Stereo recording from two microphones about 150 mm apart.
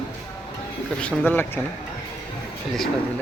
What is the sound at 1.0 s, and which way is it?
Speech, 10° left (ahead or behind).